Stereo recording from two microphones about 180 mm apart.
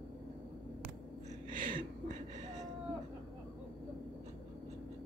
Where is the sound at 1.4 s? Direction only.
45° right (ahead or behind).